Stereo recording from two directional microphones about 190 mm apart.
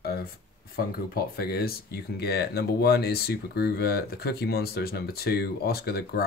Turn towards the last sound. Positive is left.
turn(degrees=55)  # may be behind; listen again after turning